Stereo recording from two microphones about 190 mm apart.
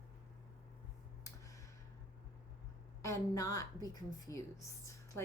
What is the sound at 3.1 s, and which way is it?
A woman's voice, 15° left (ahead or behind).